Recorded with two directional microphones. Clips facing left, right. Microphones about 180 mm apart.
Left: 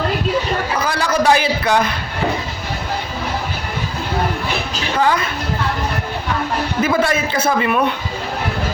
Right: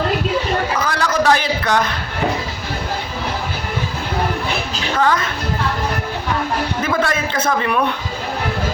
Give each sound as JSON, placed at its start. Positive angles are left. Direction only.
{"t": 0.8, "sound": "a sound", "side_deg": 10}
{"t": 4.9, "sound": "a man's voice", "side_deg": 10}
{"t": 6.8, "sound": "a man's voice", "side_deg": 10}